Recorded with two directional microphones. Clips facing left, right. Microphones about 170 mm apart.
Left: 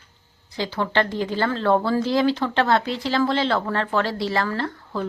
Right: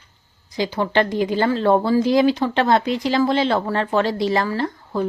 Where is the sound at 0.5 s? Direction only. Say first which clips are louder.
Right 3 dB; 15° right (ahead or behind).